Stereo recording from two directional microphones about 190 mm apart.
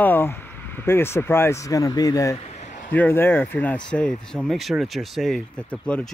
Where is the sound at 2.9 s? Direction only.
10° left (ahead or behind).